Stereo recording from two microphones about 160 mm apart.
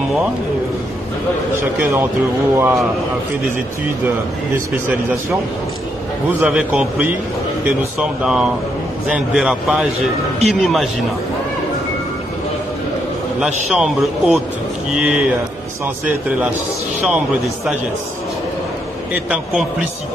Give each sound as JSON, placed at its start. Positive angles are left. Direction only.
{"t": 1.6, "sound": "a man's voice", "side_deg": -10}
{"t": 6.4, "sound": "a man's voice", "side_deg": -10}
{"t": 13.4, "sound": "a man's voice", "side_deg": -5}
{"t": 19.1, "sound": "a man's voice", "side_deg": -10}